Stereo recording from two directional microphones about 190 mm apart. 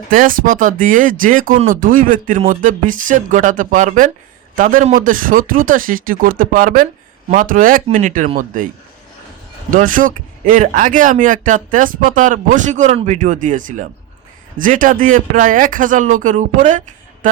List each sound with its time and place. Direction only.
0.1 s speech: 45° right (ahead or behind)
9.6 s speech: 45° right (ahead or behind)
17.2 s a sound: 45° right (ahead or behind)